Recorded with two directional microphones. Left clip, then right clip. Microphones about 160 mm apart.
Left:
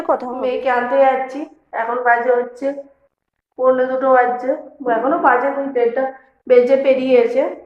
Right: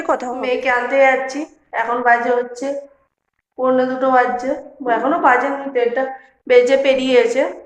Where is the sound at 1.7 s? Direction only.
20° right (ahead or behind).